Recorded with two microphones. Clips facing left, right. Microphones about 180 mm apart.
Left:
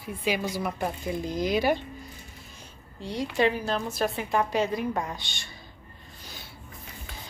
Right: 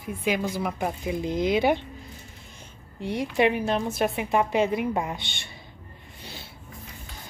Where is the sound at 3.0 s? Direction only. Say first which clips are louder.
Right 2 dB; 25° right (ahead or behind).